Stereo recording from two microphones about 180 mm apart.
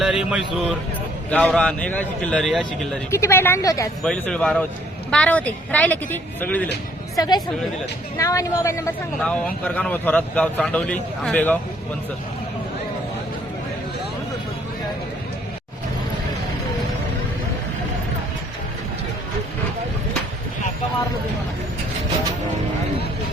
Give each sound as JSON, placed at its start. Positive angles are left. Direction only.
{"t": 0.0, "sound": "speech", "side_deg": -5}
{"t": 3.1, "sound": "a man's voice", "side_deg": 15}
{"t": 4.0, "sound": "a man's voice", "side_deg": 5}
{"t": 7.2, "sound": "a man's voice", "side_deg": 20}